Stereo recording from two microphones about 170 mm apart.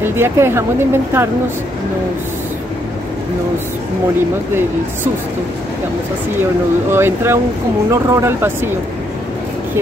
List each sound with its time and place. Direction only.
0.0 s speech: 15° right (ahead or behind)
6.9 s speech: 15° right (ahead or behind)